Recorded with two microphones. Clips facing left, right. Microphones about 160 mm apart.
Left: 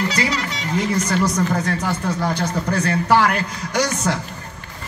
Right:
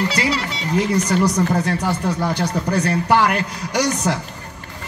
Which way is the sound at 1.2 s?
15° right (ahead or behind).